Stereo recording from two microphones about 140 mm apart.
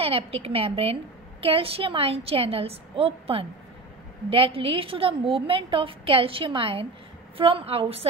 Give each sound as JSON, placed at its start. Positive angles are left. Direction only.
{"t": 0.0, "sound": "a woman's voice", "side_deg": -45}